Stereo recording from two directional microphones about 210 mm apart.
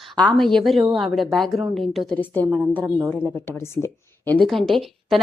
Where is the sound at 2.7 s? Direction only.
5° right (ahead or behind).